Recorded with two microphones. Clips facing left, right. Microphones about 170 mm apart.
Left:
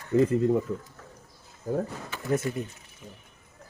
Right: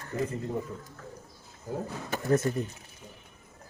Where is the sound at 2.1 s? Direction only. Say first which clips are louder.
Right 5 dB; 45° right (ahead or behind).